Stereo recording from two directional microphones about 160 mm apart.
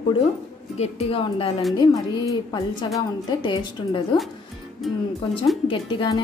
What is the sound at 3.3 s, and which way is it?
Speech, 30° left (ahead or behind).